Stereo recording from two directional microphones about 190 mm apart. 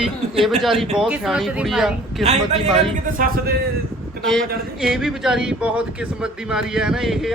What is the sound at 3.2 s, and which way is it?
Speech, 50° right (ahead or behind).